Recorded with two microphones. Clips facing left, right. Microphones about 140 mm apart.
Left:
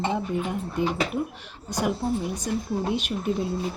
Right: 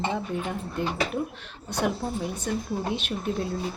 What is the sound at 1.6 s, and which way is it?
Speech, 10° left (ahead or behind).